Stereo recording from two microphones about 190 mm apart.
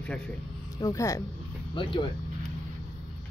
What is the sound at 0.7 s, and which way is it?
Speech, 20° left (ahead or behind).